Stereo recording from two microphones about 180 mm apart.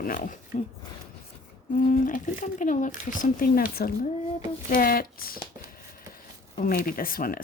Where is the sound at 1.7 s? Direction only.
50° left (ahead or behind).